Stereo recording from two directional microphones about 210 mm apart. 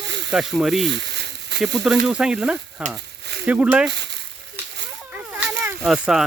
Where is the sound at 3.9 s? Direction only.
55° right (ahead or behind).